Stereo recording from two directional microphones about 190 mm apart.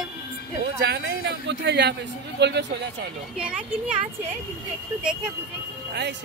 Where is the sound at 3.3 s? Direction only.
5° right (ahead or behind).